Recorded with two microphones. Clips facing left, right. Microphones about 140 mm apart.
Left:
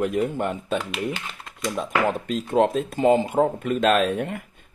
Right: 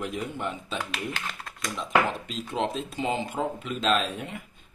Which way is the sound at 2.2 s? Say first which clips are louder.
Left 9 dB; 50° left (ahead or behind).